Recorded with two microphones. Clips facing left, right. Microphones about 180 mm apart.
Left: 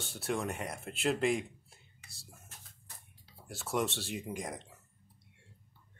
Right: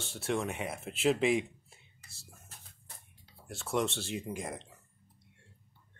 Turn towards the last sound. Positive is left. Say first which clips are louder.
# right 1 dB
turn(degrees=0)  # may be behind; listen again after turning